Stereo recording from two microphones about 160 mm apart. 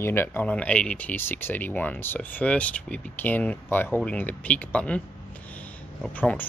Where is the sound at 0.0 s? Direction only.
15° left (ahead or behind).